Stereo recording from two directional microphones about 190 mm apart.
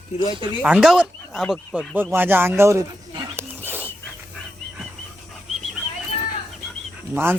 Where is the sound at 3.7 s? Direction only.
10° right (ahead or behind).